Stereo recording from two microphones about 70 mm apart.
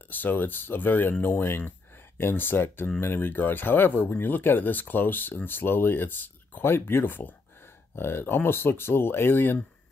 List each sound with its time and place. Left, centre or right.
0.1 s speech: left